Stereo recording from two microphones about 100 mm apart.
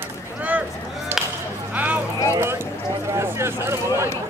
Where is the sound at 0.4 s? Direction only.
15° right (ahead or behind).